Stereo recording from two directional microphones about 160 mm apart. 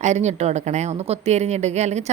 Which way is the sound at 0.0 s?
45° right (ahead or behind).